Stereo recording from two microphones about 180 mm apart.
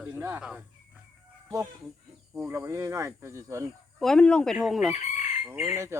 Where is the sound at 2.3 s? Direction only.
15° right (ahead or behind).